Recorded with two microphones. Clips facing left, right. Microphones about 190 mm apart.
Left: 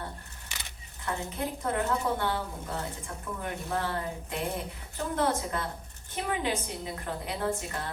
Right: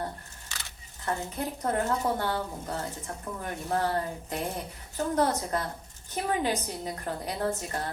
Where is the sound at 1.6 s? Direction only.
40° right (ahead or behind).